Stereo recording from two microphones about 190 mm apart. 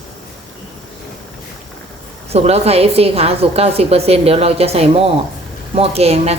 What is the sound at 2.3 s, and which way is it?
A woman's voice, 35° right (ahead or behind).